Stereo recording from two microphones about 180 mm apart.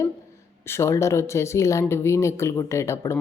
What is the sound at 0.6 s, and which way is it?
Speech, 15° left (ahead or behind).